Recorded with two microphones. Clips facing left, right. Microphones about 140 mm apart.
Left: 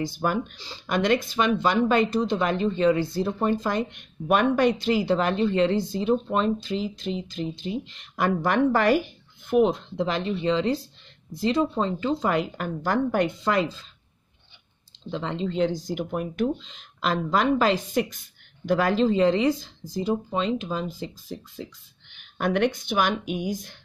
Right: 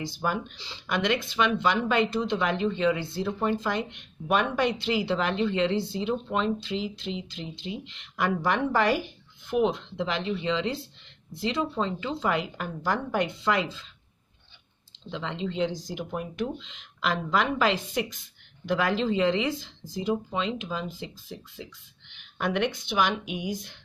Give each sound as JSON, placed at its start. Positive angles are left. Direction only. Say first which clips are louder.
{"t": 0.0, "sound": "speech", "louder": "left 4 dB", "side_deg": 50}
{"t": 15.0, "sound": "speech", "louder": "left 4 dB", "side_deg": 40}